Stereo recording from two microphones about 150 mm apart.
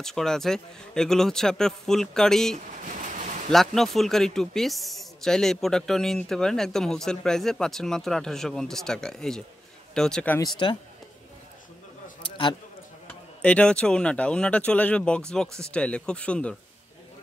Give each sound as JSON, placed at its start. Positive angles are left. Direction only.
{"t": 0.0, "sound": "a man's voice", "side_deg": 5}
{"t": 2.8, "sound": "a sound", "side_deg": -55}
{"t": 3.5, "sound": "a man's voice", "side_deg": 0}
{"t": 10.4, "sound": "speech", "side_deg": 30}
{"t": 13.4, "sound": "speech", "side_deg": 10}